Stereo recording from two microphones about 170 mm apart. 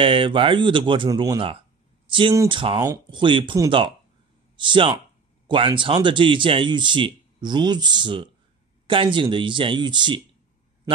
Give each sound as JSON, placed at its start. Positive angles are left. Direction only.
{"t": 0.0, "sound": "a man's voice", "side_deg": -30}
{"t": 2.0, "sound": "a sound", "side_deg": -30}
{"t": 2.3, "sound": "a man's voice", "side_deg": -25}